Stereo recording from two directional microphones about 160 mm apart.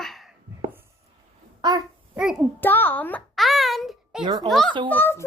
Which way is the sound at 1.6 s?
25° right (ahead or behind).